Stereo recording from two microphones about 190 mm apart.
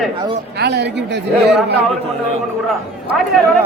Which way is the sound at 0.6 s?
65° right (ahead or behind).